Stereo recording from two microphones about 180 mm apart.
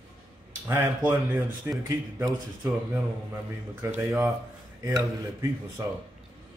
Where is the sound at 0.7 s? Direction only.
15° right (ahead or behind).